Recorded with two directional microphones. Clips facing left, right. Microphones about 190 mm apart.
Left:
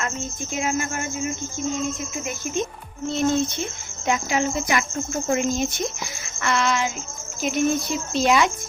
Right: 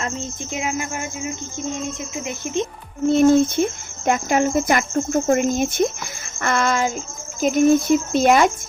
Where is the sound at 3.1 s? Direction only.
55° right (ahead or behind).